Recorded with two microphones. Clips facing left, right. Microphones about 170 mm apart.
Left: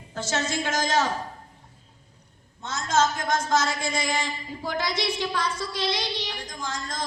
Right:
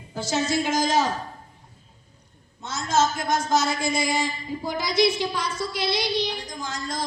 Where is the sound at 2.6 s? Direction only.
10° right (ahead or behind).